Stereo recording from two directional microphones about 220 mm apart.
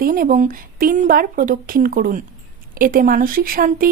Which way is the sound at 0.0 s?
40° right (ahead or behind).